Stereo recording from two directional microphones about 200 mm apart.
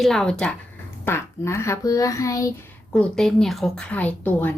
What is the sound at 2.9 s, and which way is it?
Speech, 5° left (ahead or behind).